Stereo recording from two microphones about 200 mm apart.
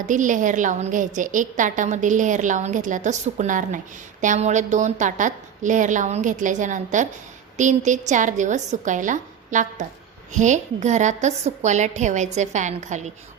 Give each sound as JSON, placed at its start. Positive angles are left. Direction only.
{"t": 0.0, "sound": "a woman's voice", "side_deg": -40}